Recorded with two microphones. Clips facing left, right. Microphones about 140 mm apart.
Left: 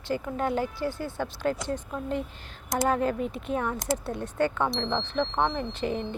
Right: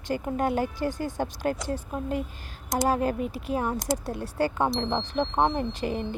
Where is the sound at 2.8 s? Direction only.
35° right (ahead or behind).